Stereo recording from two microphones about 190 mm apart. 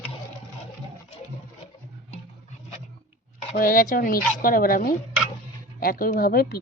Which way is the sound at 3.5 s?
50° left (ahead or behind).